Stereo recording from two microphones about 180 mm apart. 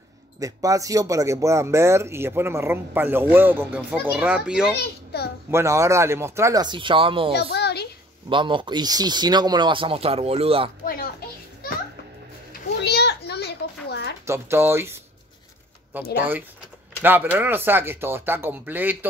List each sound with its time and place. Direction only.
0.4 s speech: 20° right (ahead or behind)
5.1 s a child's voice: 60° left (ahead or behind)
5.5 s speech: 15° right (ahead or behind)
7.3 s a sound: 65° left (ahead or behind)
8.3 s speech: 25° right (ahead or behind)
12.8 s children playing: 65° left (ahead or behind)
14.2 s speech: 15° right (ahead or behind)
17.0 s speech: 10° right (ahead or behind)